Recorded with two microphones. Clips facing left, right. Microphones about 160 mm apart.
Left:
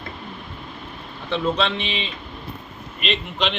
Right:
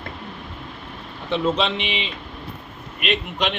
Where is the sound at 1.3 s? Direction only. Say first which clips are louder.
Right 1 dB; 15° right (ahead or behind).